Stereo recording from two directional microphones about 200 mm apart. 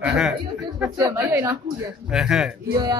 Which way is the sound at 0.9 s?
15° right (ahead or behind).